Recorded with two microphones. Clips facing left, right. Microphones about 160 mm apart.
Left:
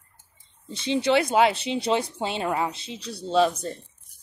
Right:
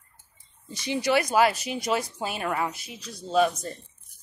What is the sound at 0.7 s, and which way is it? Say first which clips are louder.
Speech: left 3 dB; 25° left (ahead or behind).